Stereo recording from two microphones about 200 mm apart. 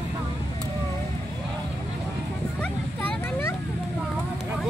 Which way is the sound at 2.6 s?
5° left (ahead or behind).